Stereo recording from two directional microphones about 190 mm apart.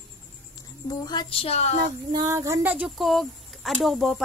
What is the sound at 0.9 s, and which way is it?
Speech, 20° left (ahead or behind).